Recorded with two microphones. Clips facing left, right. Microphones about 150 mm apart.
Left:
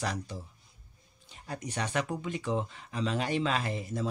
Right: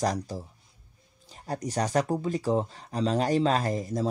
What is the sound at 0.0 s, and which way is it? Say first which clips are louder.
Speech: right 7 dB; 40° right (ahead or behind).